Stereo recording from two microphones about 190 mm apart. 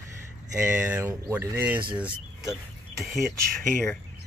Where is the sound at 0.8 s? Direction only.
10° right (ahead or behind).